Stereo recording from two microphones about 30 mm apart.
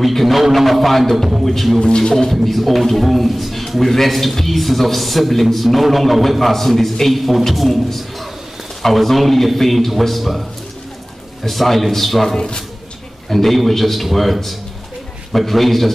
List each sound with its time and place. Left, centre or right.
0.0 s a man's voice: centre
1.8 s speech: left
2.4 s a man's voice: centre
11.4 s a man's voice: centre